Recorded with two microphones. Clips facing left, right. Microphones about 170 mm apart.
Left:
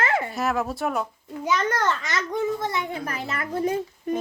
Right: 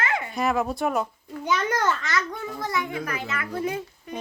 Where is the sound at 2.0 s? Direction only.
20° left (ahead or behind); by 4.2 s 40° left (ahead or behind).